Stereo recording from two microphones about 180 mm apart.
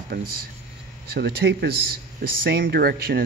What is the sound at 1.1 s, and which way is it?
Speech, 60° right (ahead or behind).